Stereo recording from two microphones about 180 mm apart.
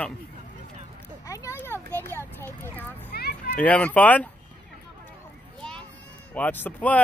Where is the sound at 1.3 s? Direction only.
15° left (ahead or behind).